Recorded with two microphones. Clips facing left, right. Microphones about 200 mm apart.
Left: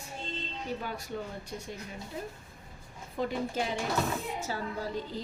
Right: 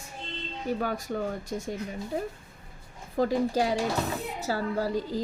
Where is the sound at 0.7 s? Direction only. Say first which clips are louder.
Right 8 dB; 45° right (ahead or behind).